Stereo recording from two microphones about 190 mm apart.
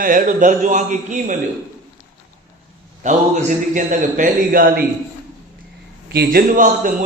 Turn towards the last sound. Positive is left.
turn(degrees=-45)  # may be behind; listen again after turning